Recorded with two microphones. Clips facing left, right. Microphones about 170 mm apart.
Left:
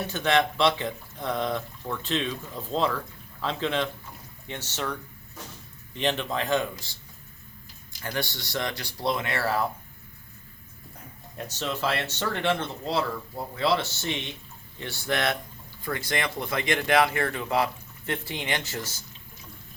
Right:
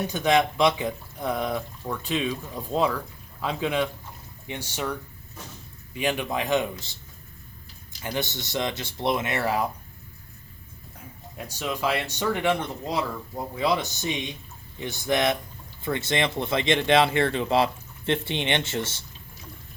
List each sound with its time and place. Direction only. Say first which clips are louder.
0.1 s speech: right 1 dB; 15° right (ahead or behind)
8.0 s speech: right 2 dB; 20° right (ahead or behind)
11.3 s speech: right 1 dB; 10° right (ahead or behind); by 19.0 s 25° right (ahead or behind)